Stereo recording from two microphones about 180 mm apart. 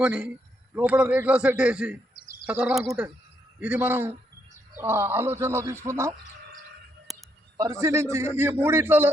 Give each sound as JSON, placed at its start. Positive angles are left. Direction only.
{"t": 0.0, "sound": "a man's voice", "side_deg": -5}
{"t": 2.1, "sound": "bird", "side_deg": 60}
{"t": 2.5, "sound": "speech", "side_deg": -5}
{"t": 7.1, "sound": "a sound", "side_deg": 0}
{"t": 7.5, "sound": "speech", "side_deg": -20}